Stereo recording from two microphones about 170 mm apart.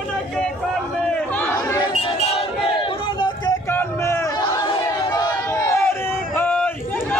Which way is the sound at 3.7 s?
15° left (ahead or behind).